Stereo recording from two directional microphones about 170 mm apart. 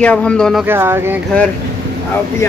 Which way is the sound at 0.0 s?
5° left (ahead or behind).